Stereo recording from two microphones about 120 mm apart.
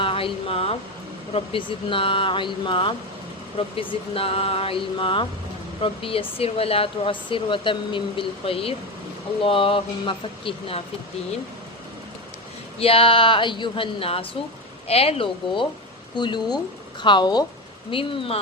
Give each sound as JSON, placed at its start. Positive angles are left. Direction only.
{"t": 0.0, "sound": "speech", "side_deg": 50}
{"t": 12.8, "sound": "speech", "side_deg": 50}
{"t": 16.1, "sound": "speech", "side_deg": 40}